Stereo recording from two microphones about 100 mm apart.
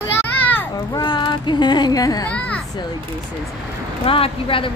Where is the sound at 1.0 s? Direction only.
50° left (ahead or behind).